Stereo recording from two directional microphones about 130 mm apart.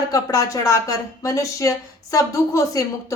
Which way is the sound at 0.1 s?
25° left (ahead or behind).